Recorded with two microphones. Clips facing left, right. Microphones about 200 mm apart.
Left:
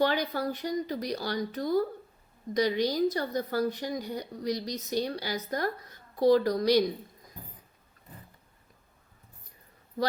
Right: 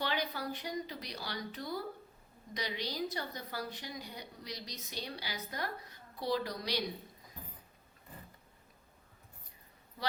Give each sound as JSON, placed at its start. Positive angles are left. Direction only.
{"t": 0.0, "sound": "speech", "side_deg": 45}